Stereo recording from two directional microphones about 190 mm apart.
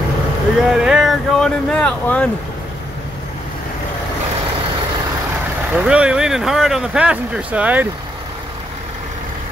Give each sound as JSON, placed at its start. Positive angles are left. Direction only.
{"t": 0.7, "sound": "speech", "side_deg": -5}
{"t": 5.7, "sound": "speech", "side_deg": -5}